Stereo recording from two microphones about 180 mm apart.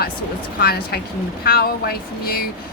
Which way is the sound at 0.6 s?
60° left (ahead or behind).